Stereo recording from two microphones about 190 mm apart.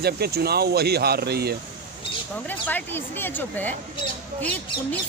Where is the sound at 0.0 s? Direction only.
55° right (ahead or behind).